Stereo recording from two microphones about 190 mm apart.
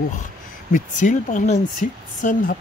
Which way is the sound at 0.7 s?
40° left (ahead or behind).